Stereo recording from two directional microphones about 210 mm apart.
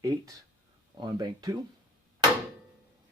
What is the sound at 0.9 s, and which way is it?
Speech, 20° right (ahead or behind).